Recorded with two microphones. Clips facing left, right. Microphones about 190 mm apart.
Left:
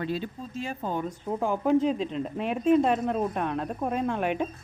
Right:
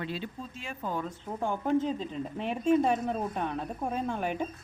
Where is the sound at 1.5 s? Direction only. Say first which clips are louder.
Left 4 dB; 90° left.